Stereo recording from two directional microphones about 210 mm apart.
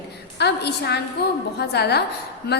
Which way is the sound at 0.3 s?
50° left (ahead or behind).